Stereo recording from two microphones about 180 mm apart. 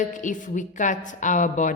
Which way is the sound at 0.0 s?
45° left (ahead or behind).